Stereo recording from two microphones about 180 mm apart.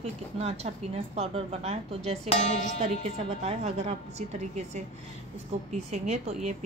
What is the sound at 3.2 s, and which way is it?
Speech, 35° right (ahead or behind).